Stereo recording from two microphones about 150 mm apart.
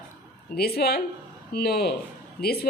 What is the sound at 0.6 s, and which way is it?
A woman's voice, 90° left.